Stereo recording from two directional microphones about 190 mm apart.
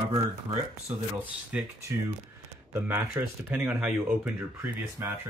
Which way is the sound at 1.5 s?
5° right (ahead or behind).